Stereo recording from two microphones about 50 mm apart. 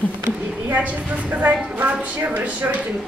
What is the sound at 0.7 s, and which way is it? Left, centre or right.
A woman's voice, right.